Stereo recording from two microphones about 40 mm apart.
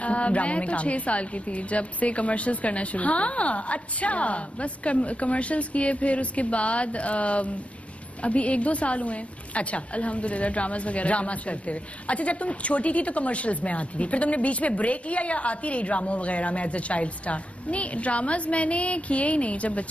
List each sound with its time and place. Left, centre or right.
0.0 s a woman's voice: left